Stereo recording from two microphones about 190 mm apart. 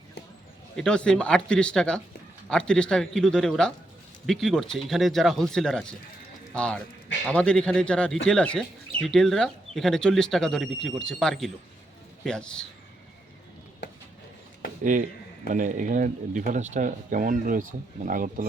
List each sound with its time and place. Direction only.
0.8 s speech: 5° left (ahead or behind)
15.4 s speech: 45° right (ahead or behind)